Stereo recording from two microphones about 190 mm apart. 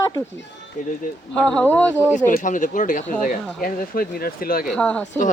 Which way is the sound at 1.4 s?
5° left (ahead or behind).